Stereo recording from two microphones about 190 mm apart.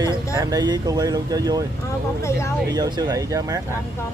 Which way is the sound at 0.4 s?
20° right (ahead or behind).